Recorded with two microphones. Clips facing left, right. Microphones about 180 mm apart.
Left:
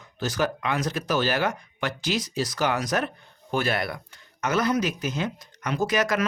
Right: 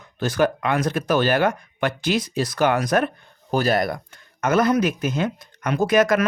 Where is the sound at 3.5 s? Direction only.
40° right (ahead or behind).